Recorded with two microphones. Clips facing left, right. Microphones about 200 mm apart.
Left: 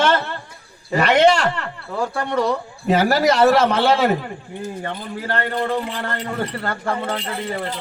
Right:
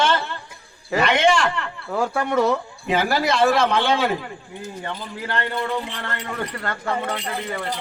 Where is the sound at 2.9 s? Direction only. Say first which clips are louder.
Left 5 dB; 40° left (ahead or behind).